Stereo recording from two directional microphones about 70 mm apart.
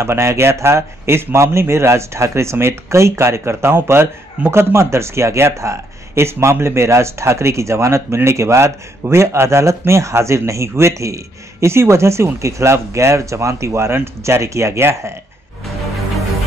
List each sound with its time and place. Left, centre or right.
0.0 s speech: right